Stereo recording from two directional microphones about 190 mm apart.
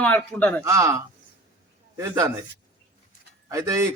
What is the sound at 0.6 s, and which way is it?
Speech, 15° right (ahead or behind).